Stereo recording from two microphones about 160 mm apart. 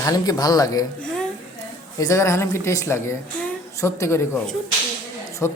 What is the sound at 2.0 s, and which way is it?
Speech, 20° left (ahead or behind).